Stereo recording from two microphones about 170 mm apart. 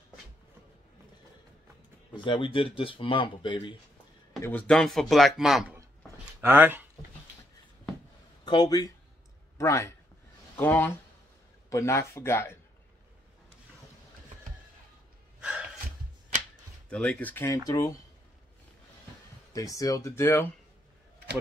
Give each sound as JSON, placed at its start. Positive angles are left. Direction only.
{"t": 2.1, "sound": "speech", "side_deg": 30}
{"t": 4.4, "sound": "speech", "side_deg": 10}
{"t": 8.5, "sound": "speech", "side_deg": 25}
{"t": 16.9, "sound": "speech", "side_deg": 5}
{"t": 19.5, "sound": "speech", "side_deg": 20}